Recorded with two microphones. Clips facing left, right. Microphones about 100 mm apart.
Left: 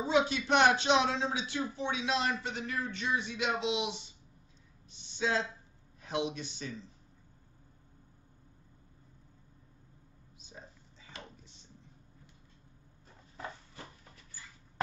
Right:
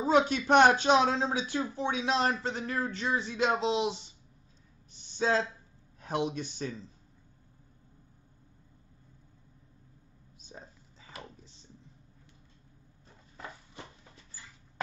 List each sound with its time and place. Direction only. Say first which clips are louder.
0.0 s speech: right 4 dB; 50° right (ahead or behind)
4.9 s speech: right 4 dB; 45° right (ahead or behind)
10.5 s a sound: right 3 dB; 40° right (ahead or behind)